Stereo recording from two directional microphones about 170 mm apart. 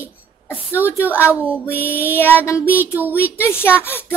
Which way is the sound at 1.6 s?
10° left (ahead or behind).